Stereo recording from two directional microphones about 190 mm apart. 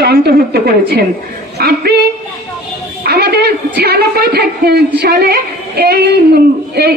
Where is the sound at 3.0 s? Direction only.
55° right (ahead or behind).